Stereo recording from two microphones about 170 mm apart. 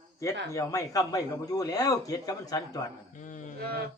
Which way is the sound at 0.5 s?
20° left (ahead or behind).